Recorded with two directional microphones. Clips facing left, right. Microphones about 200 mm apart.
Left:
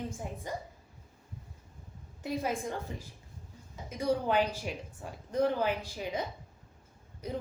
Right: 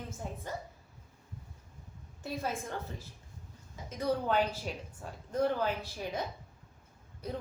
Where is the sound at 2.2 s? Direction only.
15° left (ahead or behind).